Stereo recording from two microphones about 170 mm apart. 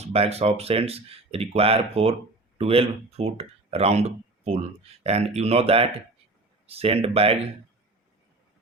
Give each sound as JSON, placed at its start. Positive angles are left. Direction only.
{"t": 0.0, "sound": "speech", "side_deg": -35}